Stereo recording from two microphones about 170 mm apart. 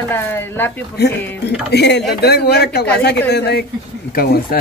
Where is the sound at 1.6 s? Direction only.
80° left.